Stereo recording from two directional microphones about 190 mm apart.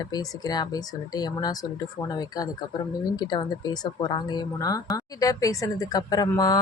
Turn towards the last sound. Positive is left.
turn(degrees=20)  # may be behind; listen again after turning